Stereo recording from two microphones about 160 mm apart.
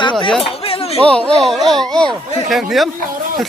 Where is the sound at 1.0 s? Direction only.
5° left (ahead or behind).